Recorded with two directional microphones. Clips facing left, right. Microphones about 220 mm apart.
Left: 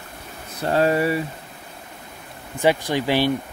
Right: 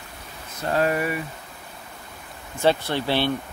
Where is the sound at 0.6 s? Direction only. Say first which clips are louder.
Left 4 dB; 30° left (ahead or behind).